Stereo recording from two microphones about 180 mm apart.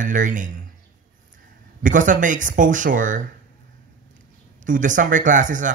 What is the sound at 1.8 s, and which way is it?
Speech, 45° right (ahead or behind).